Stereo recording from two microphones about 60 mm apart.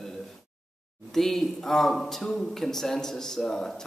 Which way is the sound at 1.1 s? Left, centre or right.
Centre.